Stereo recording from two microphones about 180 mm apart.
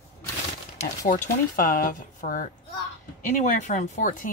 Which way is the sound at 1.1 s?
50° left (ahead or behind).